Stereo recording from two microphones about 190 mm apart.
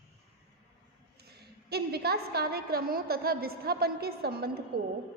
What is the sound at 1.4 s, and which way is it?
A woman's voice, 55° right (ahead or behind).